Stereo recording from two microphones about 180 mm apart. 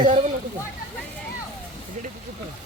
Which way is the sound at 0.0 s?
35° right (ahead or behind).